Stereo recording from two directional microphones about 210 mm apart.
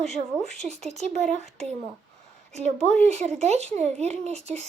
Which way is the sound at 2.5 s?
30° right (ahead or behind).